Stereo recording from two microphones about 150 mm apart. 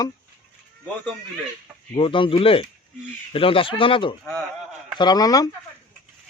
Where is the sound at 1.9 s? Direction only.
35° left (ahead or behind).